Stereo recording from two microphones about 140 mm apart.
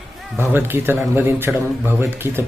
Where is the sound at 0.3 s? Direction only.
15° right (ahead or behind).